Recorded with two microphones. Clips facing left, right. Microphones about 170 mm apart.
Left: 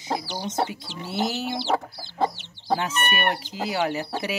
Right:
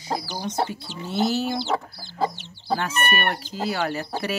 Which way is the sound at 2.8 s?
15° left (ahead or behind).